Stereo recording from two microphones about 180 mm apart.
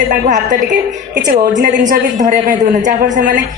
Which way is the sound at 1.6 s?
45° right (ahead or behind).